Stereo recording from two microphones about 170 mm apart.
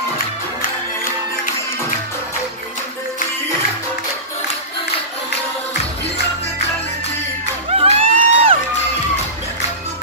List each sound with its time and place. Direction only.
7.7 s music: 35° right (ahead or behind)